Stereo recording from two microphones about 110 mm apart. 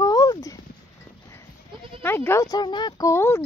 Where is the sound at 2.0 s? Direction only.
20° left (ahead or behind).